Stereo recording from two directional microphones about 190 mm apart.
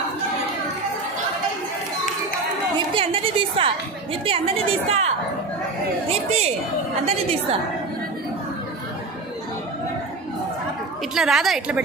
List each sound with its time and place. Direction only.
2.9 s a woman's voice: 30° right (ahead or behind)
11.1 s a woman's voice: centre (ahead or behind)